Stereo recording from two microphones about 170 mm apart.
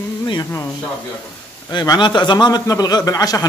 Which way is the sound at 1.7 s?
25° left (ahead or behind).